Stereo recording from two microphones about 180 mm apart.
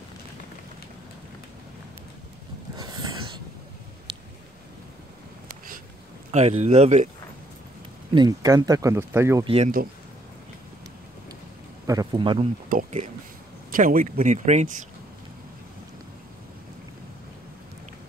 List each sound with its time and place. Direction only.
2.7 s a sound: 25° right (ahead or behind)
6.3 s speech: 40° right (ahead or behind)
8.1 s speech: 20° right (ahead or behind)
9.4 s speech: 30° right (ahead or behind)
11.8 s speech: 20° right (ahead or behind)
12.6 s speech: 45° right (ahead or behind)